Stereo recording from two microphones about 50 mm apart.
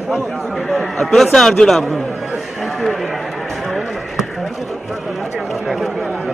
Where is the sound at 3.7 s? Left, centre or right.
Centre.